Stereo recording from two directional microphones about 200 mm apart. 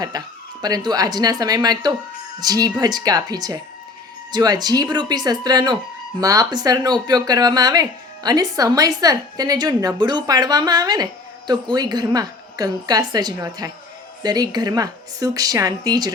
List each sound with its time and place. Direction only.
0.1 s speech: 20° right (ahead or behind)